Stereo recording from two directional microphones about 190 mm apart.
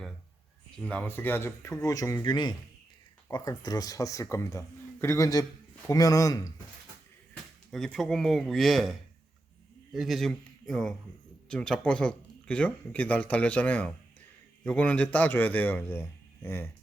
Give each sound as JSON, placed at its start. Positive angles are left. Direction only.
{"t": 0.8, "sound": "speech", "side_deg": 5}
{"t": 7.7, "sound": "speech", "side_deg": 0}